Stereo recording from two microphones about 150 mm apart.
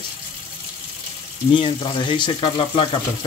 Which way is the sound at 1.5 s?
35° left (ahead or behind).